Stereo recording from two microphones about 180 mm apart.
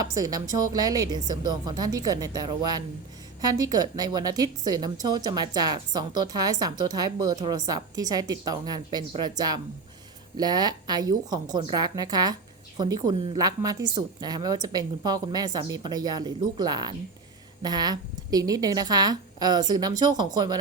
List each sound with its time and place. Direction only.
0.0 s a woman's voice: 20° right (ahead or behind)